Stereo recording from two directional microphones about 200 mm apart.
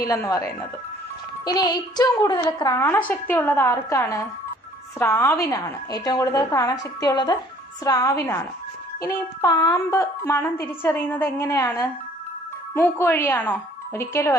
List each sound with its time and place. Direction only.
0.0 s a woman's voice: 15° left (ahead or behind)